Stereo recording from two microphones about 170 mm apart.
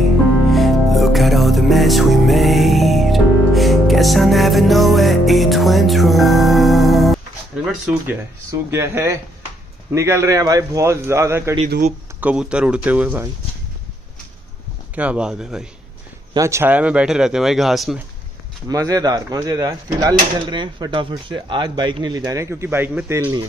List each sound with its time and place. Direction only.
0.5 s music: centre (ahead or behind)
7.8 s a man's voice: 15° right (ahead or behind)
15.0 s speech: 5° right (ahead or behind)
16.3 s speech: 15° right (ahead or behind); by 17.9 s centre (ahead or behind)
18.7 s speech: 20° right (ahead or behind)